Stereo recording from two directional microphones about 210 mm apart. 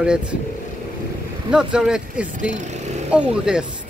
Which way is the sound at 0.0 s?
5° right (ahead or behind).